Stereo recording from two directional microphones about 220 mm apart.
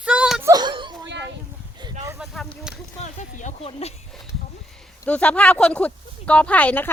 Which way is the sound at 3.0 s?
30° left (ahead or behind).